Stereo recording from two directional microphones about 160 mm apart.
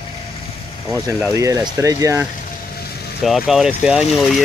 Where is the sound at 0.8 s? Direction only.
20° right (ahead or behind).